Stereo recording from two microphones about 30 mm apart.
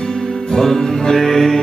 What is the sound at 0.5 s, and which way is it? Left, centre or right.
Music, centre.